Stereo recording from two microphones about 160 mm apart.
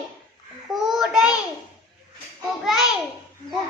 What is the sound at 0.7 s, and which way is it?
Child singing, centre (ahead or behind).